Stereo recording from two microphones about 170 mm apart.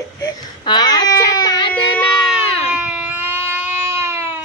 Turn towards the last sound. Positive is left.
turn(degrees=-15)  # may be behind; listen again after turning